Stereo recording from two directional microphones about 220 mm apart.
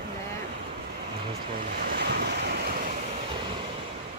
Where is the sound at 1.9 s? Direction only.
50° right (ahead or behind).